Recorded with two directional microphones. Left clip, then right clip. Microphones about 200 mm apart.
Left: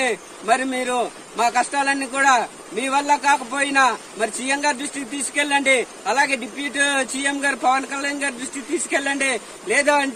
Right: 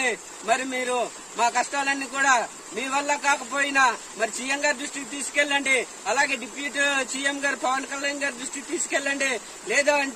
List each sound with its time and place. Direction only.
0.0 s a man's voice: 15° right (ahead or behind)